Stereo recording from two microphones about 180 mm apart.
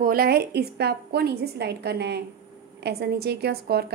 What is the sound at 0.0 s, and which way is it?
A woman's voice, 55° right (ahead or behind).